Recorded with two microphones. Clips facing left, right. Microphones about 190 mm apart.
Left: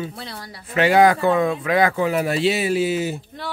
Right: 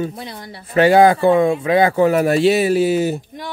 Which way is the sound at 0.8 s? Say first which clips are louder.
Right 4 dB; 30° right (ahead or behind).